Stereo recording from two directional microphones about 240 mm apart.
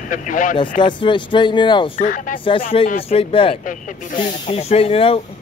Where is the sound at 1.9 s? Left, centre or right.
Left.